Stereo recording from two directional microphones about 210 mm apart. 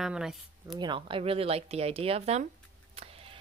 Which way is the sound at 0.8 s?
25° right (ahead or behind).